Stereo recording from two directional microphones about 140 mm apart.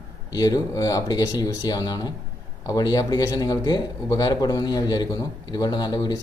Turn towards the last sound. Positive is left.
turn(degrees=30)  # may be behind; listen again after turning